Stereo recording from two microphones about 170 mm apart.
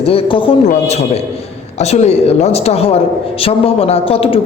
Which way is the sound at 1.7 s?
40° left (ahead or behind).